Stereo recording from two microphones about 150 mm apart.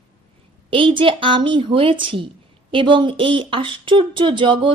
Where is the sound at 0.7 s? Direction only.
35° right (ahead or behind).